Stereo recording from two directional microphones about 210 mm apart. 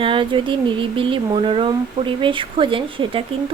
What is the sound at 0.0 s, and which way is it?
Speech, 25° right (ahead or behind).